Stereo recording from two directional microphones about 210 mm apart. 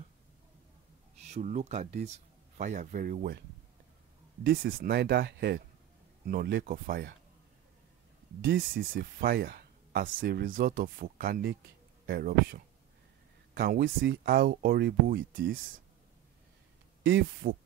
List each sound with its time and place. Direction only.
1.3 s speech: 35° right (ahead or behind)
8.5 s speech: 45° right (ahead or behind)
17.0 s speech: 55° right (ahead or behind)